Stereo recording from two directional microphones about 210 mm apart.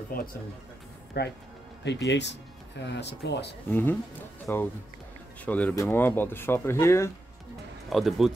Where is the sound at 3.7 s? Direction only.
10° left (ahead or behind).